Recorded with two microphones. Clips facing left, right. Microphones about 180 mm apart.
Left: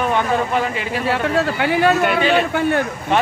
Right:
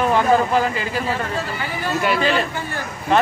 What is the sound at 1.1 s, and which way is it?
Speech, 70° left (ahead or behind).